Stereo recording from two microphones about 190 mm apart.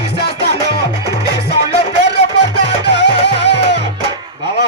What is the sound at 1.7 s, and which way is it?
Music, 60° left (ahead or behind).